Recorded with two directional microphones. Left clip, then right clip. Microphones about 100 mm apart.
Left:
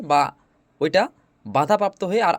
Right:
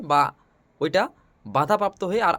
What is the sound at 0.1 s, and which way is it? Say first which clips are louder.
Speech: left 1 dB; 20° left (ahead or behind).